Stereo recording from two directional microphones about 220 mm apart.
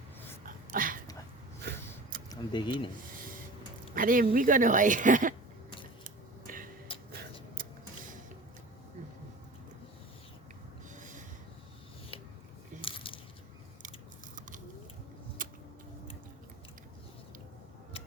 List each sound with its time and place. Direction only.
0.4 s a sound: 40° right (ahead or behind)
2.3 s speech: 20° left (ahead or behind)
3.9 s speech: 40° right (ahead or behind)
6.5 s tick-tock: 40° right (ahead or behind)
10.9 s snort: 35° right (ahead or behind)
12.8 s coin: 25° left (ahead or behind)
15.4 s a sound: 40° right (ahead or behind)